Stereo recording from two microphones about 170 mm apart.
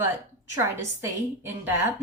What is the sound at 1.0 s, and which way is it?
Speech, 15° right (ahead or behind).